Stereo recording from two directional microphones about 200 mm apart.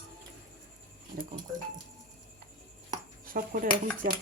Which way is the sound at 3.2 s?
45° right (ahead or behind).